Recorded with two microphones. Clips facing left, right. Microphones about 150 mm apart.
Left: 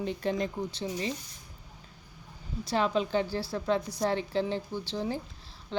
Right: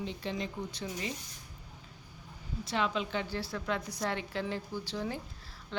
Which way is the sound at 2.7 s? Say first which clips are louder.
Left 5 dB; 40° left (ahead or behind).